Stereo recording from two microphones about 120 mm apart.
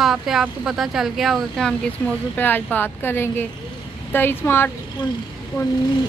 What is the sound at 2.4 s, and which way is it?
Speech, 15° left (ahead or behind).